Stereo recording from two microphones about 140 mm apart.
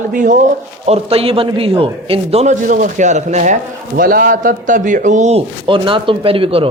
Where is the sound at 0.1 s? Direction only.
70° right (ahead or behind).